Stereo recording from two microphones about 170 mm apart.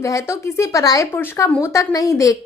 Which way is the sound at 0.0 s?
15° left (ahead or behind).